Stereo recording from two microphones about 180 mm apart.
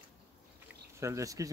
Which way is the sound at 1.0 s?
15° right (ahead or behind).